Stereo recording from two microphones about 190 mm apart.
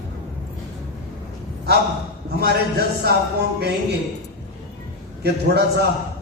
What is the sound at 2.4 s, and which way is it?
Speech, 55° right (ahead or behind).